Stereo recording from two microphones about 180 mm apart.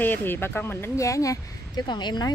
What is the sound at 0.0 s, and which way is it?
Speech, 10° left (ahead or behind).